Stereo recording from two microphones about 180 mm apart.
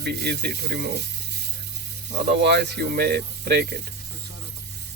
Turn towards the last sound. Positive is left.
turn(degrees=-65)  # may be behind; listen again after turning